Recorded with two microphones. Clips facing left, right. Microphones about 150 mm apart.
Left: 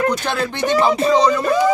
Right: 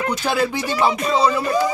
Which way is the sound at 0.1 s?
5° right (ahead or behind).